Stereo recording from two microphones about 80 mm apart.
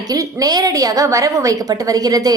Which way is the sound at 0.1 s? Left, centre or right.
Right.